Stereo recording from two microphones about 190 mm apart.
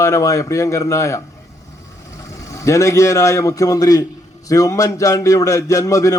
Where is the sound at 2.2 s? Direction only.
15° left (ahead or behind).